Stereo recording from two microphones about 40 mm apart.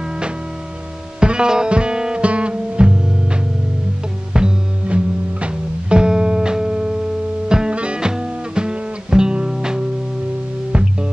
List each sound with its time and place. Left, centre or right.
1.2 s music: right
10.7 s music: right